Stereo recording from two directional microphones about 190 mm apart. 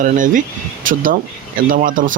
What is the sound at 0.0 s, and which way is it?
Speech, 45° right (ahead or behind).